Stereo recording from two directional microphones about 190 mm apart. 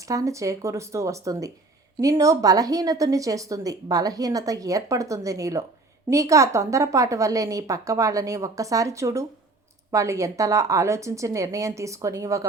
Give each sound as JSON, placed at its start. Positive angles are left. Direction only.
{"t": 0.0, "sound": "speech", "side_deg": -15}